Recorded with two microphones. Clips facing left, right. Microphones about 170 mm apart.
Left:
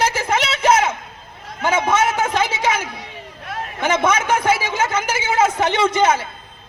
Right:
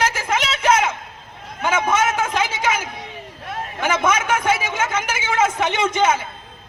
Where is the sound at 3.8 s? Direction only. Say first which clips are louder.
Left 2 dB; 30° left (ahead or behind).